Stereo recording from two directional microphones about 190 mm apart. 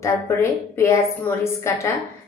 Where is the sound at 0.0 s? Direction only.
15° left (ahead or behind).